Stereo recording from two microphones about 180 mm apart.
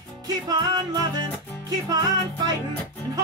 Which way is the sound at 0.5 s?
25° right (ahead or behind).